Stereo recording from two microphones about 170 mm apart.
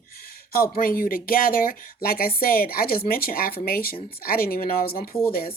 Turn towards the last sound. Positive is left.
turn(degrees=60)  # may be behind; listen again after turning